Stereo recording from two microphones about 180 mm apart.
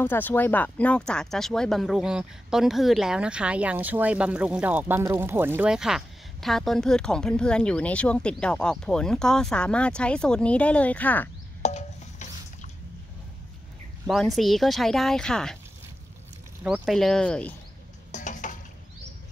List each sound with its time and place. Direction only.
0.0 s speech: 10° left (ahead or behind)
11.6 s a sound: 40° left (ahead or behind)
14.0 s speech: centre (ahead or behind)
16.6 s speech: centre (ahead or behind)
18.1 s stir: 45° left (ahead or behind)